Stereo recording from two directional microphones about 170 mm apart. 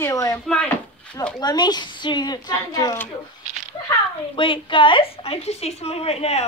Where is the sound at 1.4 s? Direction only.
25° left (ahead or behind).